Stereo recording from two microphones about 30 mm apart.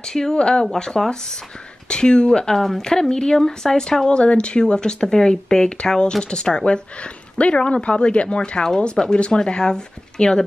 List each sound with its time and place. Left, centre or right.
0.0 s speech: left
0.4 s speech: left
2.5 s speech: centre
2.8 s speech: left
4.2 s speech: left
8.6 s speech: left